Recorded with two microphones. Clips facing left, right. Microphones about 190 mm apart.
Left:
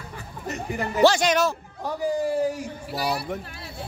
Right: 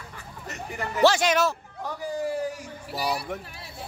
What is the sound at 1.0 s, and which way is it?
Speech, 5° right (ahead or behind).